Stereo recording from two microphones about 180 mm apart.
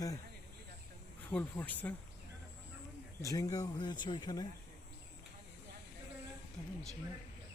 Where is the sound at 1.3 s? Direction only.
10° left (ahead or behind).